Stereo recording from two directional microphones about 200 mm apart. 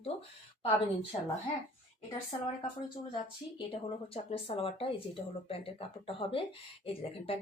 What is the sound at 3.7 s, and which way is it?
Speech, 25° left (ahead or behind).